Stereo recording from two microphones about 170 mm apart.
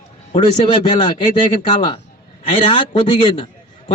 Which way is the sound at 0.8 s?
25° left (ahead or behind).